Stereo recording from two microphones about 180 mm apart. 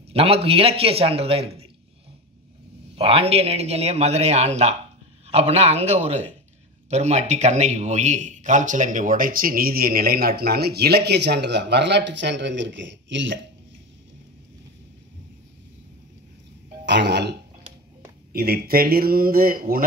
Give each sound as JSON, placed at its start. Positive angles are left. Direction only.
{"t": 0.1, "sound": "a man's voice", "side_deg": -35}
{"t": 3.0, "sound": "a man's voice", "side_deg": -35}
{"t": 16.8, "sound": "speech", "side_deg": -75}
{"t": 18.3, "sound": "a man's voice", "side_deg": -60}